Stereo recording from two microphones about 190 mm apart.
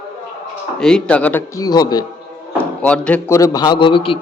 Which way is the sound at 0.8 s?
5° left (ahead or behind).